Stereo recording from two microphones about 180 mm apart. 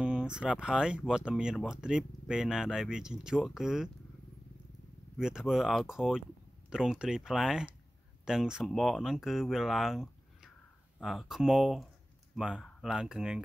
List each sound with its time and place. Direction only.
0.0 s speech: 5° right (ahead or behind)
5.1 s speech: 5° right (ahead or behind)